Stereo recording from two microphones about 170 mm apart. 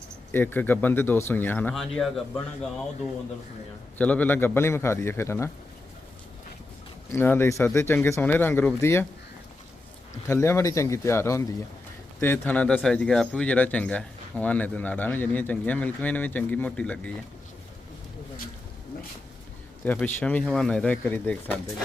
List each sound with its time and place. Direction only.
0.3 s speech: 10° left (ahead or behind)
3.9 s speech: 10° left (ahead or behind)
7.1 s speech: 10° left (ahead or behind)
10.2 s speech: 15° left (ahead or behind)
19.8 s speech: 10° left (ahead or behind)